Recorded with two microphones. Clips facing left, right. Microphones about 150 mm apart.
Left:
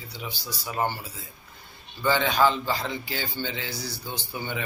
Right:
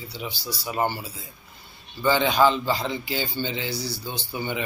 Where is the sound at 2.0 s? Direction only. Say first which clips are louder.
Right 3 dB; 10° right (ahead or behind).